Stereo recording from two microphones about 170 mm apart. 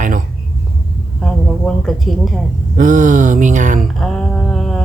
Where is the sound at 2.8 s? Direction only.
50° right (ahead or behind).